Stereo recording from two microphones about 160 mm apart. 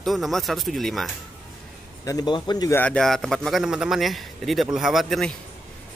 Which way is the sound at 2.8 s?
5° left (ahead or behind).